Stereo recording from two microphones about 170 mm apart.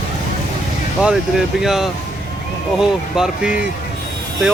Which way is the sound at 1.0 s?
5° right (ahead or behind).